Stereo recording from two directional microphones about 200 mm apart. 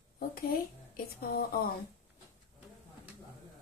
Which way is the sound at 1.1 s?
50° left (ahead or behind).